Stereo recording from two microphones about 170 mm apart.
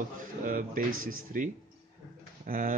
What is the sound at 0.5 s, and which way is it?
Speech, 55° right (ahead or behind).